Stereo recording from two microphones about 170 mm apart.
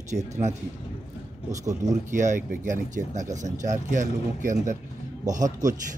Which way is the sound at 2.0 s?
45° right (ahead or behind).